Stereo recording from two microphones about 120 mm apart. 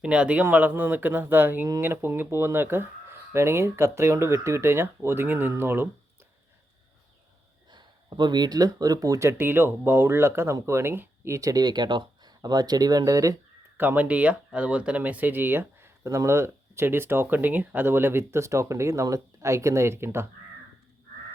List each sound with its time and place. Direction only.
0.0 s speech: 10° right (ahead or behind)
7.7 s speech: 40° right (ahead or behind)
13.7 s speech: 15° right (ahead or behind)